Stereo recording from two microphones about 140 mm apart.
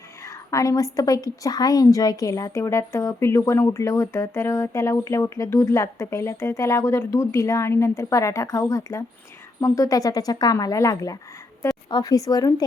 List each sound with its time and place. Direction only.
0.3 s a woman's voice: 25° left (ahead or behind)